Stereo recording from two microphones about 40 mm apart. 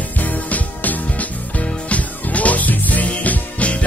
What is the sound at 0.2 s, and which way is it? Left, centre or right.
Music, left.